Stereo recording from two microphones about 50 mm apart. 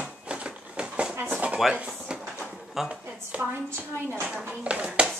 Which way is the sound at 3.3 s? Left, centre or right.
Right.